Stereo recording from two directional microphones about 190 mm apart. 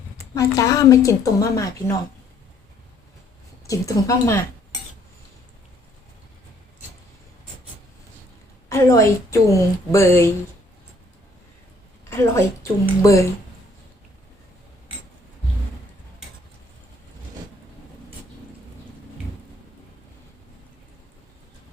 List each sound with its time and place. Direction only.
0.3 s a woman's voice: 15° left (ahead or behind)
3.7 s a woman's voice: 15° left (ahead or behind)
8.7 s a woman's voice: 15° left (ahead or behind)
12.1 s a woman's voice: 15° left (ahead or behind)